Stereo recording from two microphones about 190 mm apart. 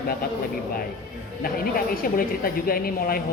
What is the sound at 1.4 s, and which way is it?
Speech, 50° left (ahead or behind).